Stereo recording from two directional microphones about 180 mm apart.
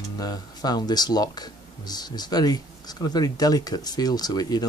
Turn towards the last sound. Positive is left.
turn(degrees=20)  # may be behind; listen again after turning